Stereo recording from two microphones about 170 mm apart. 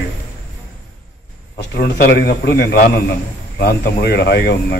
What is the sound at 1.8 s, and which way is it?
Speech, 75° left (ahead or behind).